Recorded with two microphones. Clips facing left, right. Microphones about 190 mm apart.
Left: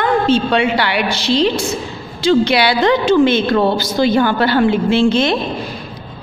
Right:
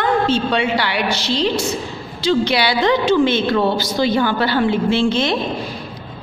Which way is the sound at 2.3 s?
55° left (ahead or behind).